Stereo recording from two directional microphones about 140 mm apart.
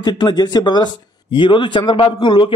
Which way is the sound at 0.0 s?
30° left (ahead or behind).